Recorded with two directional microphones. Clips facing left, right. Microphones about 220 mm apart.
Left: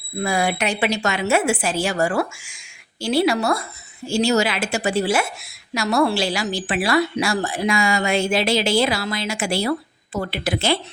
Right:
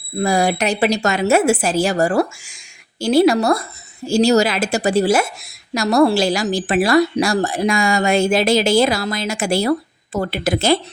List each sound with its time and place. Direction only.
0.2 s a woman's voice: 40° right (ahead or behind)